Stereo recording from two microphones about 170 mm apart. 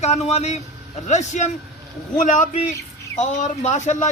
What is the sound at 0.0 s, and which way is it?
A man's voice, 40° left (ahead or behind).